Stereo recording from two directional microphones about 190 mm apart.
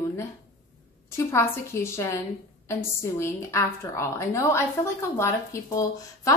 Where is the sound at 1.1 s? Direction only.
15° left (ahead or behind).